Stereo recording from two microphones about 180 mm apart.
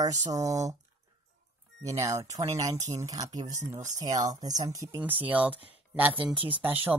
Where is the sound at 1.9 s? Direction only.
15° right (ahead or behind).